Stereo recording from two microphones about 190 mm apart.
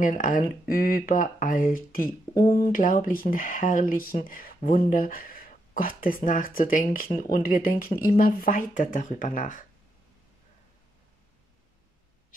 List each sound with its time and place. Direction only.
0.0 s speech: 45° left (ahead or behind)
2.3 s speech: 20° left (ahead or behind)
2.7 s speech: 45° left (ahead or behind)